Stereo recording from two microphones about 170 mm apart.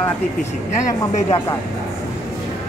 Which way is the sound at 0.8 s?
20° left (ahead or behind).